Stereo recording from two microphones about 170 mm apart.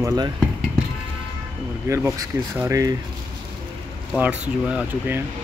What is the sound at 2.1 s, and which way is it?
Speech, 15° right (ahead or behind).